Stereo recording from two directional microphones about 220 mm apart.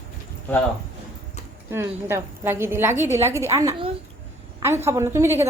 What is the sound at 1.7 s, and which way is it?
A woman's voice, 10° right (ahead or behind).